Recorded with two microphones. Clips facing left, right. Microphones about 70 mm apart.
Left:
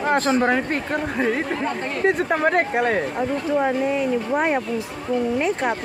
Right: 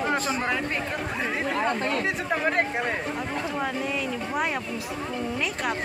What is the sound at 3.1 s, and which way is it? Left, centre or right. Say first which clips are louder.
Speech: left 7 dB; left.